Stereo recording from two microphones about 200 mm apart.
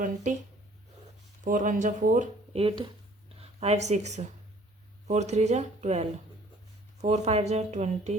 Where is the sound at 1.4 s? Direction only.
40° right (ahead or behind).